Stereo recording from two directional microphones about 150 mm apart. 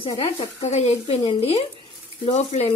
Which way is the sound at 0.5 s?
50° left (ahead or behind).